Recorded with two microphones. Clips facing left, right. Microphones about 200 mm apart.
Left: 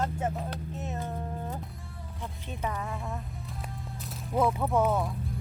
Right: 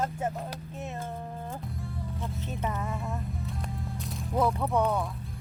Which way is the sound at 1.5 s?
Centre (ahead or behind).